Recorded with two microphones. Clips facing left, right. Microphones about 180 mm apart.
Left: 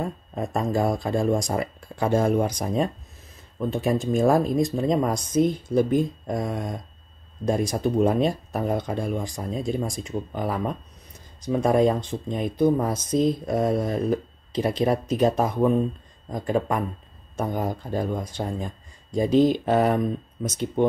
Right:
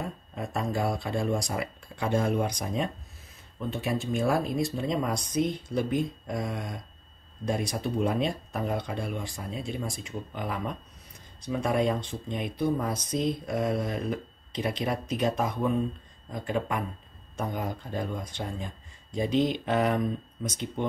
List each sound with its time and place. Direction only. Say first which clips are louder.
0.4 s speech: left 6 dB; 45° left (ahead or behind)